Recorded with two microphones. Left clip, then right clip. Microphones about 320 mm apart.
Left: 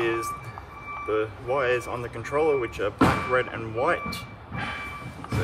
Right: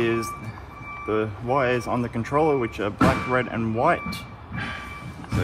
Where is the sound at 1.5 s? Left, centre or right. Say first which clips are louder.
Right 2 dB; centre.